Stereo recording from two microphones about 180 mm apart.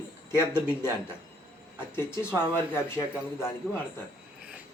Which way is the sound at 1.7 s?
15° left (ahead or behind).